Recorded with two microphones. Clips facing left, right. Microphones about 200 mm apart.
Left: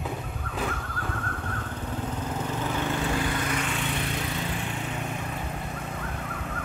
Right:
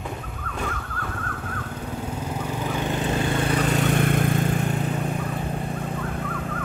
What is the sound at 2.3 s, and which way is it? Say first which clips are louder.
Vehicle: right 2 dB; 15° right (ahead or behind).